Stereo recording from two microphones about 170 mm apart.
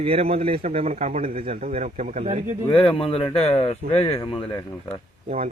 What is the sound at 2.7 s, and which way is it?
Speech, 10° left (ahead or behind).